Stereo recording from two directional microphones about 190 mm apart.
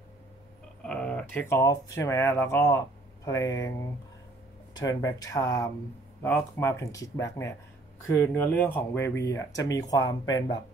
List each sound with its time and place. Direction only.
0.8 s speech: 5° left (ahead or behind)
4.7 s speech: 20° left (ahead or behind)